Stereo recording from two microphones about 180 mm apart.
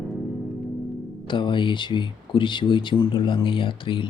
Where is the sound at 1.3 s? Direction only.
25° left (ahead or behind).